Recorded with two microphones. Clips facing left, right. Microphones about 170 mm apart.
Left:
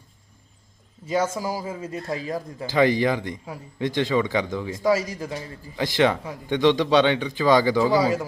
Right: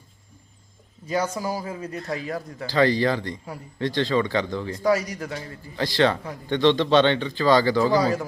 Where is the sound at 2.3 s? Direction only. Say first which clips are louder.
Left 1 dB; 15° left (ahead or behind).